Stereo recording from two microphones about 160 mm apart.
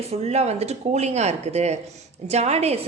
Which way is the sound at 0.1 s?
40° right (ahead or behind).